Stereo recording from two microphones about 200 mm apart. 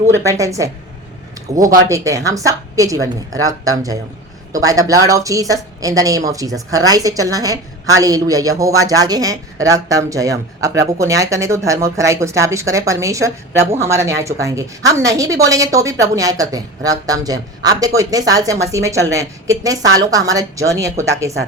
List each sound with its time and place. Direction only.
0.3 s speech: 15° right (ahead or behind)
1.5 s speech: 35° right (ahead or behind)
1.9 s speech: 15° right (ahead or behind)